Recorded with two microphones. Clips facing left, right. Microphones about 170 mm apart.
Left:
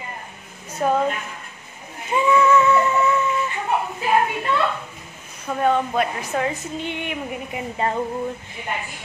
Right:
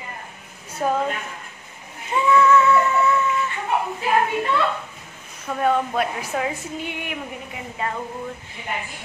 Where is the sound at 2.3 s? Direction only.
15° left (ahead or behind).